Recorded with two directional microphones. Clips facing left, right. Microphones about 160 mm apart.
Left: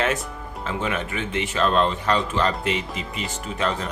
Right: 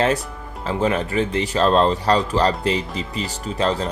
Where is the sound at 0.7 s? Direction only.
35° right (ahead or behind).